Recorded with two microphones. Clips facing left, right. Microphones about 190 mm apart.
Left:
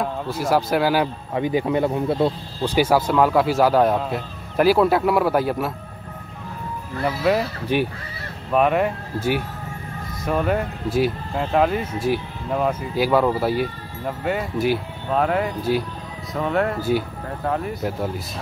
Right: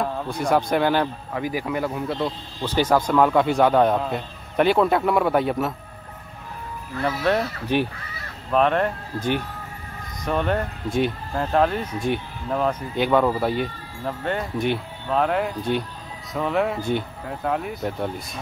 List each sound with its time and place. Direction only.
0.0 s speech: centre (ahead or behind)
1.3 s speech: 25° left (ahead or behind)
2.6 s speech: 10° left (ahead or behind)
7.2 s speech: 5° left (ahead or behind)